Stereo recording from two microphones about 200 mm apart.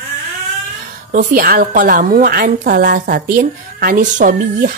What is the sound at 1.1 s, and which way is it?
A woman's voice, 45° right (ahead or behind).